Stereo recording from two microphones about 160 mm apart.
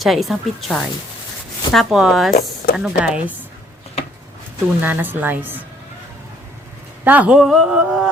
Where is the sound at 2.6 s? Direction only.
65° left (ahead or behind).